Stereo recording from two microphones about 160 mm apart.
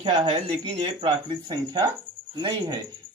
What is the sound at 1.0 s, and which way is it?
Speech, 25° right (ahead or behind).